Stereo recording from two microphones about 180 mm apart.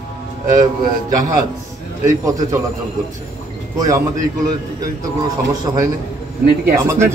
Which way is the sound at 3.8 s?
20° right (ahead or behind).